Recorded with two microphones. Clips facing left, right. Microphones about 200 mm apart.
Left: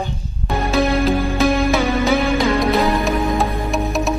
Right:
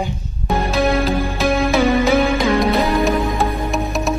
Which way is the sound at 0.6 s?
Centre (ahead or behind).